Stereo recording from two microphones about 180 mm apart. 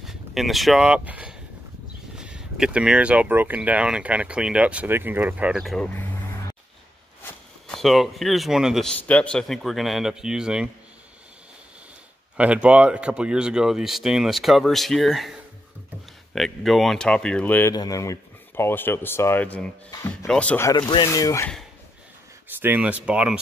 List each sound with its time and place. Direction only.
0.0 s speech: centre (ahead or behind)
7.6 s a man's voice: centre (ahead or behind)
12.4 s a man's voice: 5° right (ahead or behind)
19.9 s speech: 20° left (ahead or behind)
20.2 s speech: 5° left (ahead or behind)
20.7 s speech: 25° left (ahead or behind)
22.6 s speech: 10° right (ahead or behind)